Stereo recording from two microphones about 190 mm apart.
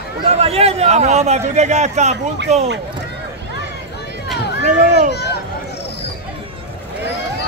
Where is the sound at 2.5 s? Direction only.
35° right (ahead or behind).